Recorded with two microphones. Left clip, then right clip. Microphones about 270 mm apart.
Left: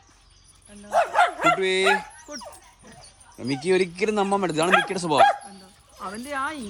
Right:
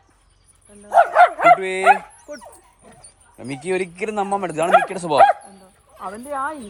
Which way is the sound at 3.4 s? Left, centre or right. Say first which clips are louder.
Left 1 dB; centre.